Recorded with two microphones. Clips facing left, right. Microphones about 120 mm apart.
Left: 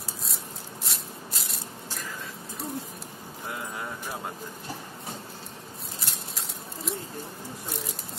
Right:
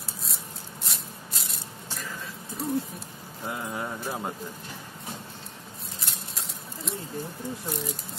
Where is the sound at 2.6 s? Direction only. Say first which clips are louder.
Right 6 dB; centre (ahead or behind).